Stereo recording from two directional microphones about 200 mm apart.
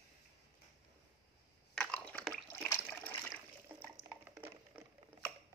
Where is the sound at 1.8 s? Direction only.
5° left (ahead or behind).